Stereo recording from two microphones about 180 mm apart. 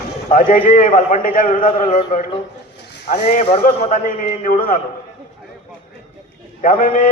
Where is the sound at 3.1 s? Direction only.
45° left (ahead or behind).